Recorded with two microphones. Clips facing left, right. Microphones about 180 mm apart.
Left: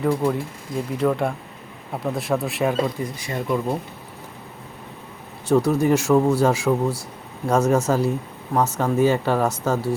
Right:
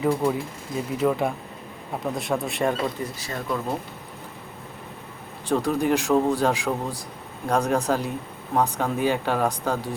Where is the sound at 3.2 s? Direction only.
15° left (ahead or behind).